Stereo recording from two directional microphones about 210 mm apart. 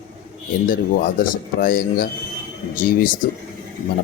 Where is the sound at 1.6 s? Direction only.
45° left (ahead or behind).